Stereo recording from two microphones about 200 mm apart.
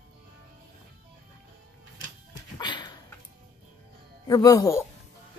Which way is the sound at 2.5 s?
20° left (ahead or behind).